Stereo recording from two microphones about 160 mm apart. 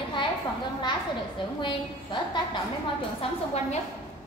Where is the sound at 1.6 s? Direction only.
30° left (ahead or behind).